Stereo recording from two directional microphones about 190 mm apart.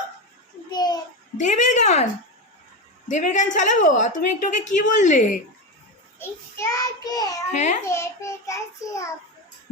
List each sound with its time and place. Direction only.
0.7 s a sound: 20° left (ahead or behind)
1.4 s a woman's voice: 40° left (ahead or behind)
3.1 s a woman's voice: 40° left (ahead or behind)
6.1 s a child's voice: 15° left (ahead or behind)
7.5 s a woman's voice: 35° left (ahead or behind)
7.9 s child singing: 15° left (ahead or behind)